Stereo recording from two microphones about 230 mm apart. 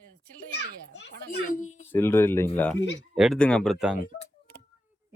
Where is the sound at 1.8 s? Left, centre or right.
Centre.